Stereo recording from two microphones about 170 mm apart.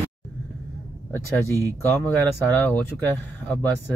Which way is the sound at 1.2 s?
15° left (ahead or behind).